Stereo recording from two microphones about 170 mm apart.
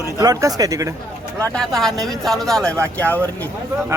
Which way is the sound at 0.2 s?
20° right (ahead or behind).